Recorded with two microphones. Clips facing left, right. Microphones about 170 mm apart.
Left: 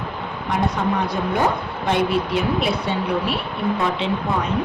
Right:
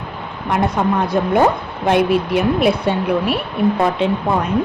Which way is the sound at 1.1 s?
55° right (ahead or behind).